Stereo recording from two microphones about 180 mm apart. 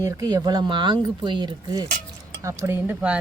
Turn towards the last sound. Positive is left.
turn(degrees=-10)  # may be behind; listen again after turning